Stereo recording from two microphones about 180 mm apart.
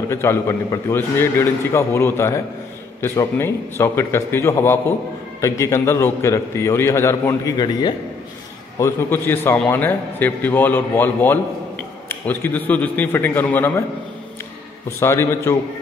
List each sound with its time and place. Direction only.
0.1 s a man's voice: 15° left (ahead or behind)
15.0 s a man's voice: 15° left (ahead or behind)